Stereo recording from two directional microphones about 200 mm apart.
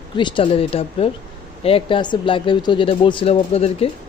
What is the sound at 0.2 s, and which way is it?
Speech, 25° left (ahead or behind).